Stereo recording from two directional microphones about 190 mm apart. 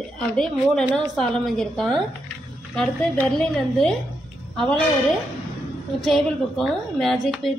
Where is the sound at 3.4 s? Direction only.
5° left (ahead or behind).